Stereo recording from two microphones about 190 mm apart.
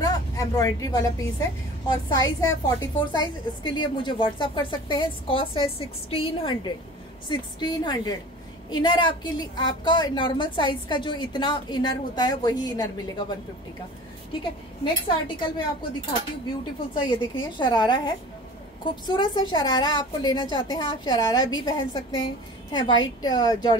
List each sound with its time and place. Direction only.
0.0 s vehicle: 20° left (ahead or behind)
1.9 s a woman's voice: 20° left (ahead or behind)
15.2 s a woman's voice: 25° left (ahead or behind)